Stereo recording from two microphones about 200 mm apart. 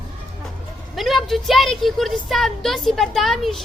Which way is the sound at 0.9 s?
Centre (ahead or behind).